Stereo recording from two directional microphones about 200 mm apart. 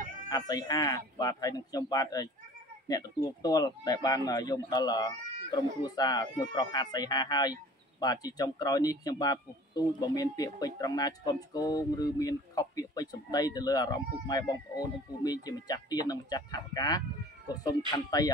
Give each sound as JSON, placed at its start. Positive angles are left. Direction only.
{"t": 0.3, "sound": "speech", "side_deg": 20}